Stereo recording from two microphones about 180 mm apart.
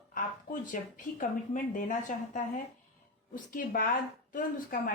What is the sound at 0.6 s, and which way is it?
A woman's voice, 45° left (ahead or behind).